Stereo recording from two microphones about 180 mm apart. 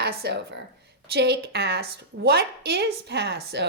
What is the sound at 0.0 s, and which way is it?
A woman's voice, 65° right (ahead or behind).